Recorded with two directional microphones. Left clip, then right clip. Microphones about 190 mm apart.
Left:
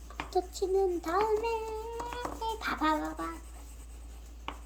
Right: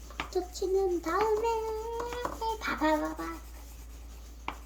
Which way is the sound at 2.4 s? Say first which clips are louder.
Right 1 dB; 20° left (ahead or behind).